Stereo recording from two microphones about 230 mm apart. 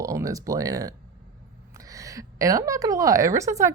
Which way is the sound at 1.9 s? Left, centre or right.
Centre.